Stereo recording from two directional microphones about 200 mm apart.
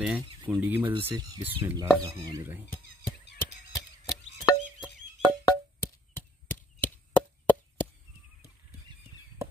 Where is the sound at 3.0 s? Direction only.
50° left (ahead or behind).